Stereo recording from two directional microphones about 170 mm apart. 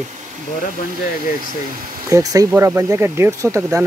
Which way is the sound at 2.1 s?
20° right (ahead or behind).